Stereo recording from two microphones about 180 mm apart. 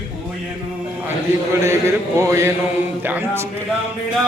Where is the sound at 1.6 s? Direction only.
15° right (ahead or behind).